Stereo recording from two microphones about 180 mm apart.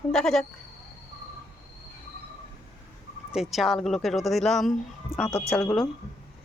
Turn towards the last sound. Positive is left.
turn(degrees=5)  # may be behind; listen again after turning